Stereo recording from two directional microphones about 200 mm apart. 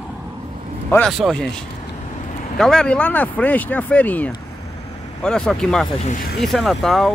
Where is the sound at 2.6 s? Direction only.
5° left (ahead or behind).